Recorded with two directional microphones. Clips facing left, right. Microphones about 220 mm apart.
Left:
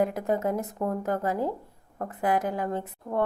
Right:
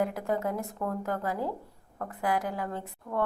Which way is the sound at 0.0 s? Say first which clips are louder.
Left 4 dB; 20° left (ahead or behind).